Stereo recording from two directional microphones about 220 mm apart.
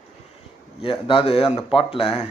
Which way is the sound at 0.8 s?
25° left (ahead or behind).